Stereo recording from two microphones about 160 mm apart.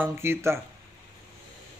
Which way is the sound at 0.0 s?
15° right (ahead or behind).